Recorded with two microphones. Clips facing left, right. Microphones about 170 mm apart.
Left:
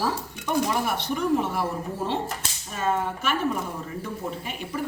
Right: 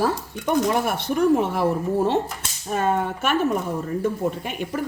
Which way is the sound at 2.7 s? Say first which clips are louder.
Right 4 dB; 55° right (ahead or behind).